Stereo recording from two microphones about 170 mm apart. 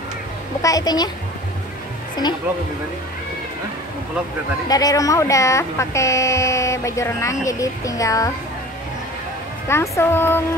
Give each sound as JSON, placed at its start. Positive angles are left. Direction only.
{"t": 0.6, "sound": "speech", "side_deg": 20}
{"t": 4.6, "sound": "speech", "side_deg": 20}
{"t": 9.7, "sound": "speech", "side_deg": 15}